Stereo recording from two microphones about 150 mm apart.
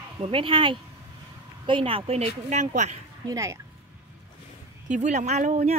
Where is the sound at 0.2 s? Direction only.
35° right (ahead or behind); by 3.0 s 50° right (ahead or behind).